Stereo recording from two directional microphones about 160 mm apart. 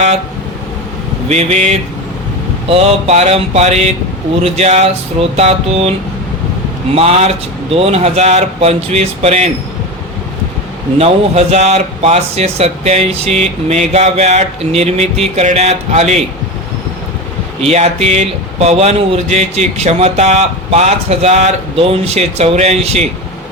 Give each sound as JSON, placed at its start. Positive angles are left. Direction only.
{"t": 1.3, "sound": "a man's voice", "side_deg": -40}
{"t": 6.9, "sound": "a man's voice", "side_deg": -40}
{"t": 10.9, "sound": "a man's voice", "side_deg": -40}
{"t": 17.6, "sound": "a man's voice", "side_deg": -40}